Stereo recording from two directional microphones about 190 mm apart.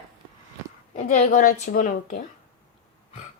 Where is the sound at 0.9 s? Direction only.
40° left (ahead or behind).